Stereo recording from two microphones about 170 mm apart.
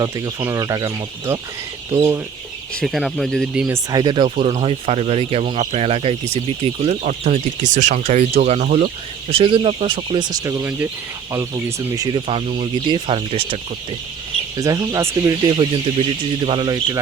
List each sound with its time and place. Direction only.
0.0 s speech: 20° right (ahead or behind)
2.8 s speech: centre (ahead or behind)
3.7 s speech: 25° right (ahead or behind); by 8.9 s 45° right (ahead or behind)
9.3 s speech: 30° right (ahead or behind)
14.5 s speech: 20° right (ahead or behind)